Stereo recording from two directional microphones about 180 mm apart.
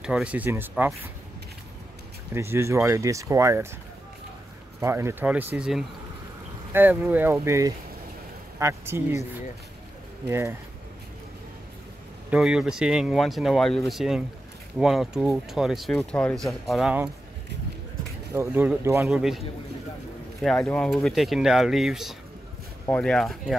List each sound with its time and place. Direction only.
0.0 s speech: 5° right (ahead or behind)
2.3 s speech: 15° right (ahead or behind)
4.7 s speech: 15° right (ahead or behind)
12.3 s speech: 5° right (ahead or behind)
18.3 s speech: 10° right (ahead or behind)
20.4 s speech: 5° left (ahead or behind)